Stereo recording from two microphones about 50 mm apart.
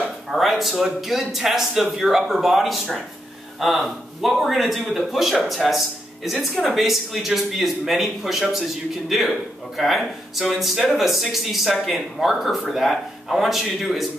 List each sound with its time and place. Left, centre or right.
0.3 s speech: centre